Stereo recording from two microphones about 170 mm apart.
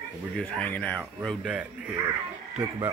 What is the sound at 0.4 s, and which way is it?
Speech, 10° left (ahead or behind).